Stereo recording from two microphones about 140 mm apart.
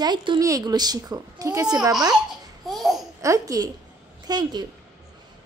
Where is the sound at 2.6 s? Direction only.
Centre (ahead or behind).